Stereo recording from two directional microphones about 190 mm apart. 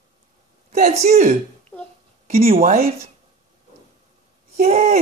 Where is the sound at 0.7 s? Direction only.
35° right (ahead or behind).